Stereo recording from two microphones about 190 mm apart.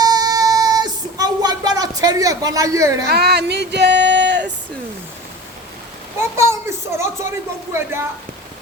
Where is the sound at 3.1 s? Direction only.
60° right (ahead or behind).